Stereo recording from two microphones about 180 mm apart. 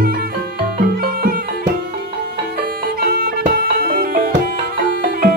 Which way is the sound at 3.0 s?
55° right (ahead or behind).